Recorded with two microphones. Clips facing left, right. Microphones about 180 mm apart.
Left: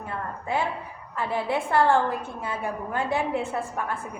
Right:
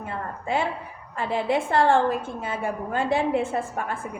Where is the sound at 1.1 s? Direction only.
25° right (ahead or behind).